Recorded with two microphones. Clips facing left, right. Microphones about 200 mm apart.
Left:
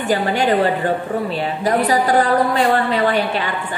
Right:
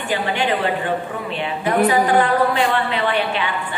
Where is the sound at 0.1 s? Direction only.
40° left (ahead or behind).